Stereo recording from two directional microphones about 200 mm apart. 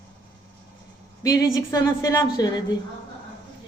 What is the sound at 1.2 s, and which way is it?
A woman's voice, 15° left (ahead or behind).